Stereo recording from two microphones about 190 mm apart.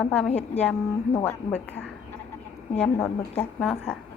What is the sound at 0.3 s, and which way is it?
Speech, 35° left (ahead or behind).